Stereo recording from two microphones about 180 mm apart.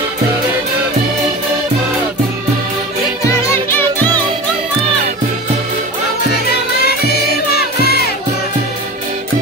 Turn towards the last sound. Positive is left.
turn(degrees=60)  # may be behind; listen again after turning